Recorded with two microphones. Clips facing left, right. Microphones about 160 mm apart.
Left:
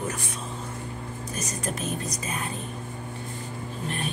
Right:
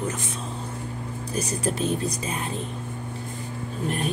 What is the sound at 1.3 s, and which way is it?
Speech, 30° right (ahead or behind).